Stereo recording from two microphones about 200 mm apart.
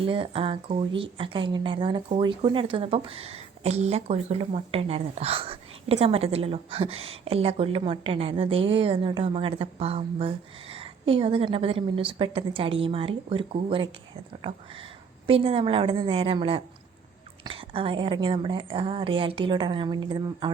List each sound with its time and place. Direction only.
0.0 s speech: 25° right (ahead or behind)
15.3 s speech: 30° right (ahead or behind)